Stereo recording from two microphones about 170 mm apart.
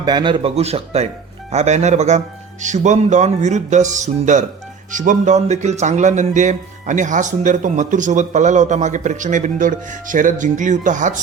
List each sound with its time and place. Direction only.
0.0 s speech: 25° right (ahead or behind); by 11.2 s 45° right (ahead or behind)